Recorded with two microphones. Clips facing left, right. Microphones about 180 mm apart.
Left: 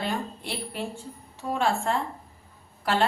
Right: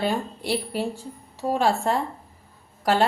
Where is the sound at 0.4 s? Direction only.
40° right (ahead or behind).